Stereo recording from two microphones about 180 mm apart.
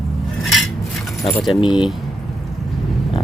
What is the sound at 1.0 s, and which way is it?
Keys jangling, centre (ahead or behind).